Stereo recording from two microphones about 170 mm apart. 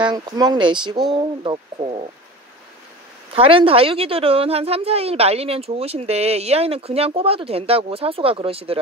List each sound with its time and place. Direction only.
0.0 s speech: 25° right (ahead or behind)
3.3 s a woman's voice: 30° right (ahead or behind)